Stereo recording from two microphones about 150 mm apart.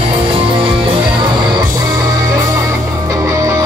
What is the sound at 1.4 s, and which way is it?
Music, 25° right (ahead or behind).